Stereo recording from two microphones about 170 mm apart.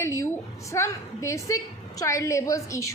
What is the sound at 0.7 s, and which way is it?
A woman's voice, 15° left (ahead or behind).